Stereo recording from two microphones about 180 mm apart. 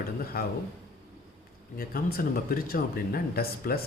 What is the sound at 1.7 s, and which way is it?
Speech, 55° left (ahead or behind).